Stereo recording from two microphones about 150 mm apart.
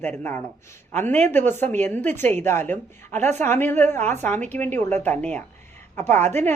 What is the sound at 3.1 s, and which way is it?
Speech, 50° right (ahead or behind).